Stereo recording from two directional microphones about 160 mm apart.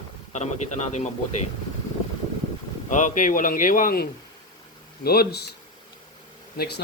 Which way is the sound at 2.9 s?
55° left (ahead or behind).